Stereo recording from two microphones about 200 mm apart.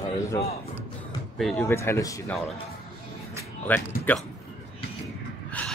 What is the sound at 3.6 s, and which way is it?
Speech, 10° left (ahead or behind).